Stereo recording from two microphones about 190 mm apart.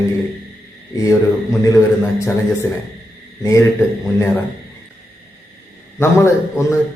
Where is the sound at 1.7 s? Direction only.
15° left (ahead or behind).